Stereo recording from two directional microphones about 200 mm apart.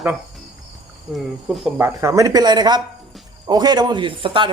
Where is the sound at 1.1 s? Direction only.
Centre (ahead or behind).